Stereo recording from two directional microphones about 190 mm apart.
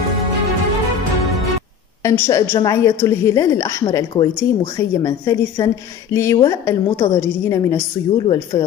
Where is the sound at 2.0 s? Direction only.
15° left (ahead or behind).